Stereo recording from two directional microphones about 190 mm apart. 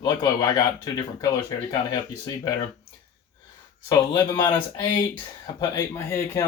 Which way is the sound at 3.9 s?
20° left (ahead or behind).